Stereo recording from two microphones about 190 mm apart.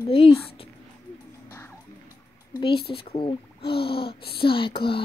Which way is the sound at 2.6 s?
30° left (ahead or behind).